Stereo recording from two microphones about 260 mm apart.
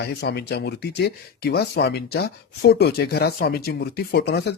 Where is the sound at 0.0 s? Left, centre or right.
Left.